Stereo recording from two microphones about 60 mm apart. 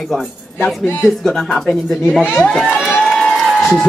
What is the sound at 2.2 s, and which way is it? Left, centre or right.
Speech, left.